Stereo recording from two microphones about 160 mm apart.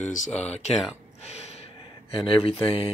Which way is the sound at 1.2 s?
40° left (ahead or behind).